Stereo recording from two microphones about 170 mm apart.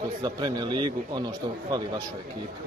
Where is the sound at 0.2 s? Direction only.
25° right (ahead or behind).